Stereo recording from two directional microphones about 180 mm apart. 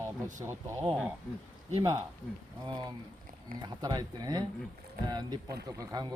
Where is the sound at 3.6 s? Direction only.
20° right (ahead or behind).